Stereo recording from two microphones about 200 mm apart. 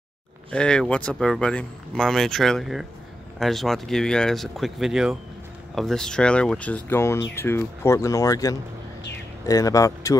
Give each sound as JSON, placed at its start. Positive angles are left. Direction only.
{"t": 0.5, "sound": "speech", "side_deg": 5}